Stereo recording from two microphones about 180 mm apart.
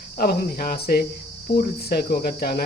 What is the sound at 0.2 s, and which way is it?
Cricket, 55° left (ahead or behind).